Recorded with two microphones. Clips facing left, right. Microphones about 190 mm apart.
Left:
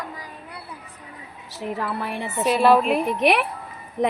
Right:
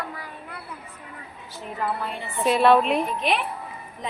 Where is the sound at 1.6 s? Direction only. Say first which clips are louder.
Left 2 dB; 70° left (ahead or behind).